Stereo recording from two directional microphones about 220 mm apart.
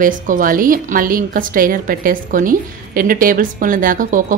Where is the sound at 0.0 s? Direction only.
40° right (ahead or behind).